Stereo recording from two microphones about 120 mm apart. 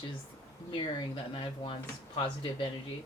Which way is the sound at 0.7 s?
45° left (ahead or behind).